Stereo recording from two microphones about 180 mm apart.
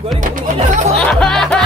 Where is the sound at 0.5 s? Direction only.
40° right (ahead or behind).